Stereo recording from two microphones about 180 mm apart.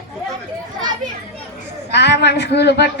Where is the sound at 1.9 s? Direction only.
70° left (ahead or behind).